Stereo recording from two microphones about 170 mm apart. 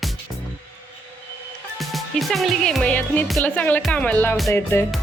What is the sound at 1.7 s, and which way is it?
Music, centre (ahead or behind).